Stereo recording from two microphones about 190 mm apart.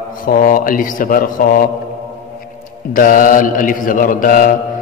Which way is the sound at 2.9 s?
45° left (ahead or behind).